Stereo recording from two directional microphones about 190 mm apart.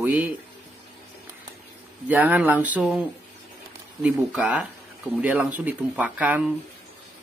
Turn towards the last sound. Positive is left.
turn(degrees=-10)  # may be behind; listen again after turning